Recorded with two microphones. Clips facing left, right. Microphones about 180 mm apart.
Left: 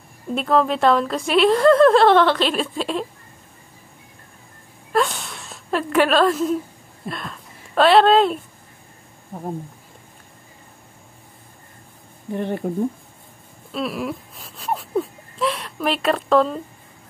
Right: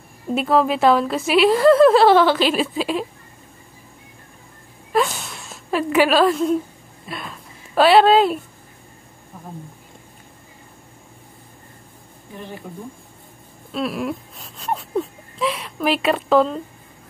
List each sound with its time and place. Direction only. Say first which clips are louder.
0.3 s a woman's voice: right 1 dB; 5° right (ahead or behind)
4.9 s a sound: right 1 dB; centre (ahead or behind)
7.1 s a woman's voice: left 2 dB; 5° right (ahead or behind)
9.3 s speech: left 9 dB; 60° left (ahead or behind)
12.4 s speech: left 10 dB; 60° left (ahead or behind)
13.7 s whimper: right 1 dB; centre (ahead or behind)